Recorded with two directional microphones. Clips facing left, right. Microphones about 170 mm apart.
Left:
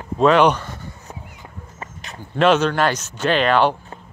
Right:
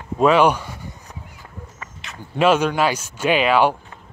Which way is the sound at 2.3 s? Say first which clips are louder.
Left 1 dB; 10° right (ahead or behind).